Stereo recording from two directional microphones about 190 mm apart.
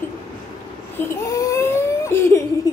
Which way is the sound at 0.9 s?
15° left (ahead or behind).